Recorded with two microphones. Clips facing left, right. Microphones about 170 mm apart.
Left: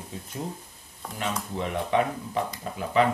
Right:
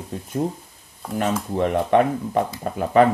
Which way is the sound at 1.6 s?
55° right (ahead or behind).